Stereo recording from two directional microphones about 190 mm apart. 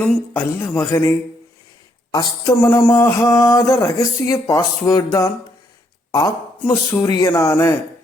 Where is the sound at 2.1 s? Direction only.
15° left (ahead or behind).